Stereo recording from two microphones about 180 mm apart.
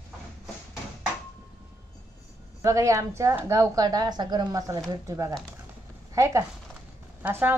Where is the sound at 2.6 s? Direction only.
15° right (ahead or behind).